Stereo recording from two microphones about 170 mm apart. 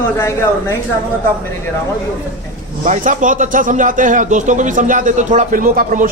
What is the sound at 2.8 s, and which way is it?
Speech, 50° right (ahead or behind).